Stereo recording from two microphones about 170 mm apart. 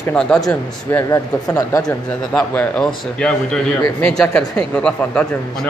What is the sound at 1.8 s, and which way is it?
A man's voice, 5° left (ahead or behind).